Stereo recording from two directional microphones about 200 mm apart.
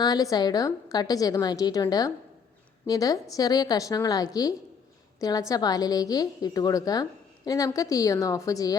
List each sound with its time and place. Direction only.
0.0 s a woman's voice: 20° left (ahead or behind)